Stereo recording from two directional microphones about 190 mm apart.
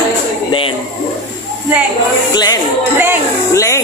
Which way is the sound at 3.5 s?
15° left (ahead or behind).